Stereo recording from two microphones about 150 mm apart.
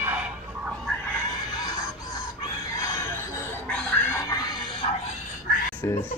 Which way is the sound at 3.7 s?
5° left (ahead or behind).